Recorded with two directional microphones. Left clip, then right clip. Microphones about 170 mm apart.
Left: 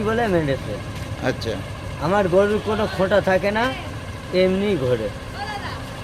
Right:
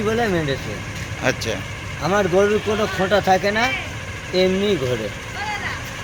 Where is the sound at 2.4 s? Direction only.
30° left (ahead or behind).